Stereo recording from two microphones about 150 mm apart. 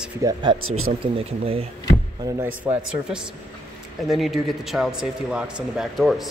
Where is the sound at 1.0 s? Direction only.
40° right (ahead or behind).